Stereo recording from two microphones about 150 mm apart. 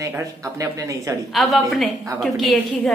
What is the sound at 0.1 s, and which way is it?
Speech, 20° right (ahead or behind).